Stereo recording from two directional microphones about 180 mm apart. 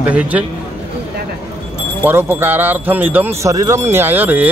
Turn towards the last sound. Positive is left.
turn(degrees=-10)  # may be behind; listen again after turning